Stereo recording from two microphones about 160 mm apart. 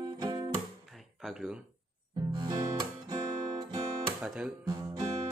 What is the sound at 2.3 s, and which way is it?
Guitar, 25° right (ahead or behind).